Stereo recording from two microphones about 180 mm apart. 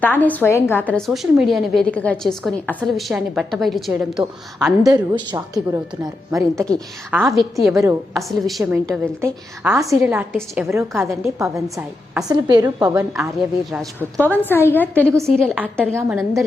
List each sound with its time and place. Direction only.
0.0 s a woman's voice: 10° left (ahead or behind)
4.9 s a woman's voice: 25° right (ahead or behind)
7.1 s a woman's voice: 5° right (ahead or behind)
7.7 s a woman's voice: 15° right (ahead or behind)
8.1 s a woman's voice: centre (ahead or behind)
9.2 s a woman's voice: 15° right (ahead or behind)
10.3 s a woman's voice: centre (ahead or behind)
10.7 s a woman's voice: 15° right (ahead or behind)
14.3 s a woman's voice: 10° left (ahead or behind)
16.0 s a woman's voice: 15° right (ahead or behind)